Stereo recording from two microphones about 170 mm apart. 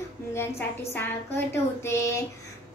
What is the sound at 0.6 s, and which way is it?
A woman's voice, 15° left (ahead or behind).